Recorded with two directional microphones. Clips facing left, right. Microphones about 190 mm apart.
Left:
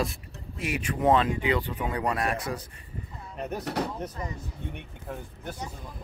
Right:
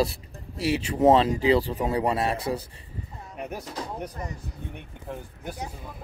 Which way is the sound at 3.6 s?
65° left (ahead or behind).